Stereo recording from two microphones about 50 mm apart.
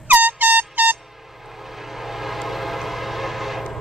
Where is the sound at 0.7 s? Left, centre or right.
Right.